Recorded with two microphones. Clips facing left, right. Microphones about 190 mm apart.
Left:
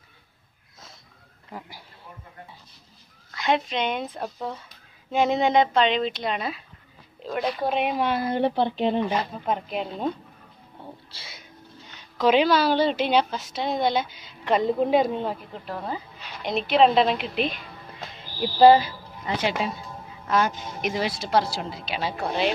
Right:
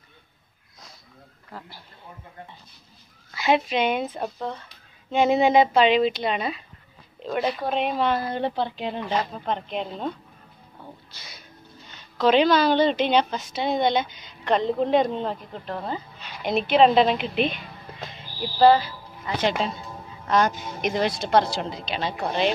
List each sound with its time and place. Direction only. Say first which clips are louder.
1.5 s speech: left 2 dB; 15° left (ahead or behind)
3.3 s a woman's voice: right 3 dB; 5° right (ahead or behind)
7.7 s speech: right 2 dB; 10° left (ahead or behind)
9.5 s a woman's voice: left 1 dB; 5° left (ahead or behind)
11.1 s cat: left 1 dB; 30° left (ahead or behind)
12.2 s a woman's voice: right 1 dB; 10° left (ahead or behind)
18.6 s speech: left 2 dB; 15° left (ahead or behind)
20.2 s a woman's voice: right 2 dB; 5° left (ahead or behind)